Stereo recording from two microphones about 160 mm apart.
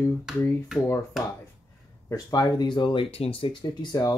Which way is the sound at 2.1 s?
20° left (ahead or behind).